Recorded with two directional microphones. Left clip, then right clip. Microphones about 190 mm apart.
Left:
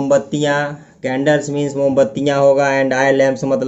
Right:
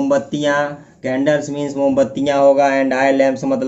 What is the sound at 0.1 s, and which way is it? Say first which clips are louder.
Speech: left 3 dB; 25° left (ahead or behind).